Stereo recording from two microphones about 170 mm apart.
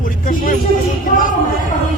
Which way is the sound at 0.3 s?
55° left (ahead or behind).